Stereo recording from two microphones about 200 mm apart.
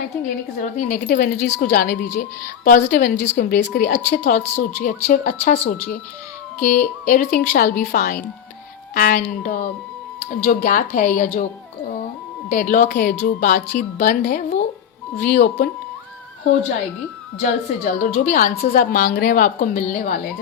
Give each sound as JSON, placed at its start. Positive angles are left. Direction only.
{"t": 0.8, "sound": "a woman's voice", "side_deg": 40}
{"t": 12.5, "sound": "a woman's voice", "side_deg": 40}
{"t": 17.4, "sound": "a woman's voice", "side_deg": 40}